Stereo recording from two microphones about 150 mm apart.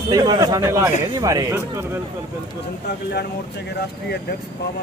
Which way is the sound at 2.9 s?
90° left.